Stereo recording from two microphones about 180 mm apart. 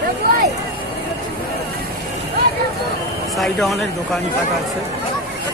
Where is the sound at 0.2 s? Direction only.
55° right (ahead or behind).